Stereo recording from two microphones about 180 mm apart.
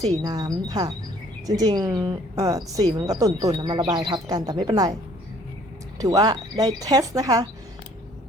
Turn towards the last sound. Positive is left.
turn(degrees=-20)  # may be behind; listen again after turning